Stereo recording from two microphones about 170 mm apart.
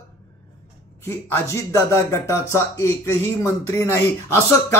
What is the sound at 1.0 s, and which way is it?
Speech, 15° left (ahead or behind).